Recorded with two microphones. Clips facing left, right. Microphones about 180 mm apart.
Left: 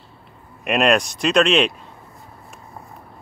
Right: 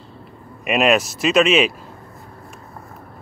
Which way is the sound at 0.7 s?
5° right (ahead or behind).